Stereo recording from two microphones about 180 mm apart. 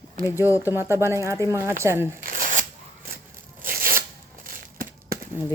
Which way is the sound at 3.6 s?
55° right (ahead or behind).